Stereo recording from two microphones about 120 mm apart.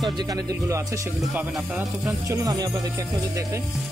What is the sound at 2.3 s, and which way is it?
Speech, 30° right (ahead or behind).